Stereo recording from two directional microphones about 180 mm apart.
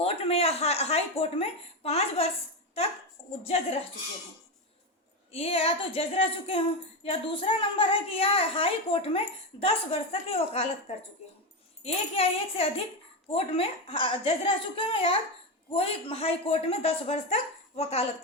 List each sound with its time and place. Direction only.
0.0 s a woman's voice: 35° left (ahead or behind)
3.4 s a woman's voice: 35° left (ahead or behind)
5.3 s a woman's voice: 35° left (ahead or behind)